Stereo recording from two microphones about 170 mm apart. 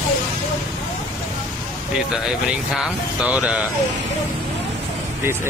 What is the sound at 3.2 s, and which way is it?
Speech, 5° right (ahead or behind).